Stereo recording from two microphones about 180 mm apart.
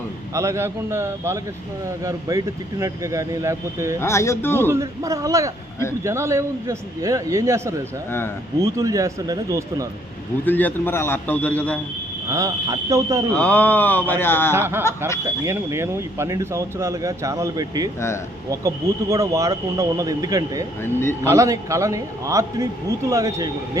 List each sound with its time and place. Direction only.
0.3 s speech: 15° right (ahead or behind)
4.0 s a man's voice: 15° left (ahead or behind)
4.7 s speech: 15° right (ahead or behind)
10.4 s a man's voice: 10° left (ahead or behind)
12.3 s speech: 20° right (ahead or behind)
13.3 s a man's voice: 10° left (ahead or behind)
14.5 s speech: 15° right (ahead or behind)
20.8 s a man's voice: 15° left (ahead or behind)
21.2 s speech: 15° right (ahead or behind)